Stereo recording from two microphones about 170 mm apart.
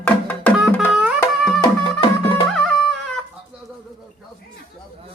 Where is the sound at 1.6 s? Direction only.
30° left (ahead or behind).